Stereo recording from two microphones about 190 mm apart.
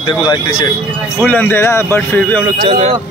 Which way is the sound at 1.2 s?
10° left (ahead or behind).